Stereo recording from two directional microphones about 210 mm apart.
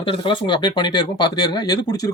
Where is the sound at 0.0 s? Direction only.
25° left (ahead or behind).